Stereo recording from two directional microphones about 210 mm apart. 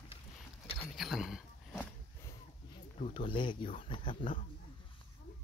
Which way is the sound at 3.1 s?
25° left (ahead or behind).